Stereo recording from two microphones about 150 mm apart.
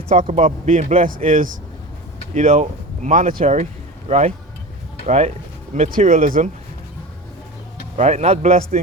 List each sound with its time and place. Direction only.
0.1 s speech: 55° right (ahead or behind)
2.3 s speech: 50° right (ahead or behind)
3.4 s a man's voice: 50° right (ahead or behind)
7.9 s a man's voice: 45° right (ahead or behind)